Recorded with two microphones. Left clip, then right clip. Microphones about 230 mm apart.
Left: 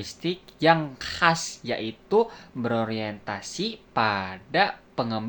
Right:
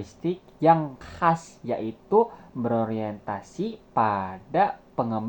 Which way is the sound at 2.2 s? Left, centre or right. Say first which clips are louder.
Right 1 dB; left.